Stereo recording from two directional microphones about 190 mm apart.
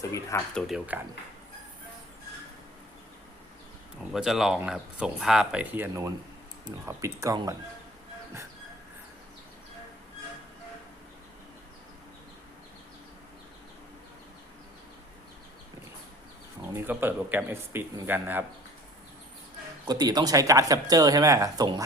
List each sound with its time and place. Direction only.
0.0 s speech: 15° left (ahead or behind)
0.9 s speech: 10° right (ahead or behind)
4.1 s speech: centre (ahead or behind)
16.7 s speech: 10° right (ahead or behind)
19.9 s speech: 20° right (ahead or behind)